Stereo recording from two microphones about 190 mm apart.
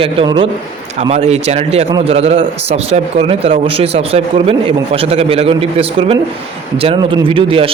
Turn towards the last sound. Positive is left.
turn(degrees=-30)  # may be behind; listen again after turning